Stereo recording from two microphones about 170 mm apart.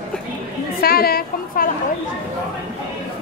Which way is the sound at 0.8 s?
65° left (ahead or behind).